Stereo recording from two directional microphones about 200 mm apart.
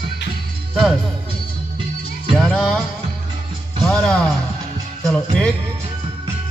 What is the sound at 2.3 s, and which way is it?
Music, centre (ahead or behind).